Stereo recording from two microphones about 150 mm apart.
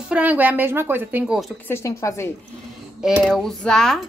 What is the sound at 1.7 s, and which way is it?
Speech, 20° left (ahead or behind).